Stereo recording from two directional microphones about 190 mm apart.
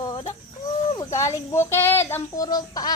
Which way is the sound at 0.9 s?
15° left (ahead or behind).